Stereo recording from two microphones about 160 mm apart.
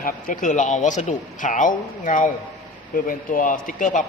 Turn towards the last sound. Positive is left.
turn(degrees=55)  # may be behind; listen again after turning